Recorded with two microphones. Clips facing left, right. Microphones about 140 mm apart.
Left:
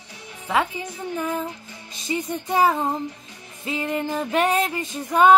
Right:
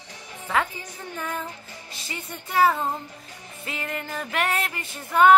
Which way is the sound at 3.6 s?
20° left (ahead or behind).